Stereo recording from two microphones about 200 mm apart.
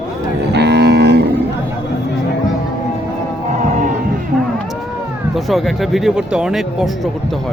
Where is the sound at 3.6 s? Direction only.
40° right (ahead or behind).